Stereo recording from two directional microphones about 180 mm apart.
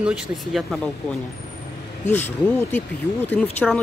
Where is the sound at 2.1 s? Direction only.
10° left (ahead or behind).